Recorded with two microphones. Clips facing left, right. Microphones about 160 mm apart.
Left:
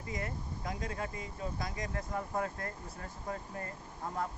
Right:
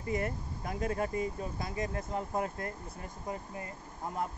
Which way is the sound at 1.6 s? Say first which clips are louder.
Right 3 dB; 25° right (ahead or behind).